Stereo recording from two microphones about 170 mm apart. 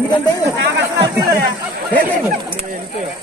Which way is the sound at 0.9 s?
20° right (ahead or behind).